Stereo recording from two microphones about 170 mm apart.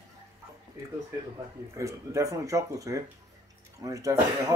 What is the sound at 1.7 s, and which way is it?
Speech, 20° right (ahead or behind).